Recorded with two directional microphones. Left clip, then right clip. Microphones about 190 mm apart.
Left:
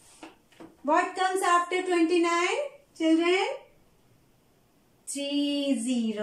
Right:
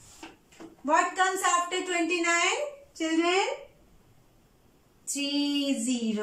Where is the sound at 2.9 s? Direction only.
15° left (ahead or behind).